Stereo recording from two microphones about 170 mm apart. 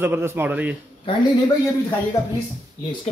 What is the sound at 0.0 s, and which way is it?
Speech, 15° right (ahead or behind).